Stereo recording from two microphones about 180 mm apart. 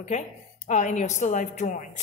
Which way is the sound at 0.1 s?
40° left (ahead or behind).